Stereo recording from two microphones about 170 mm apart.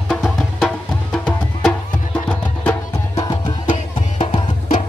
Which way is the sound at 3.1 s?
20° left (ahead or behind).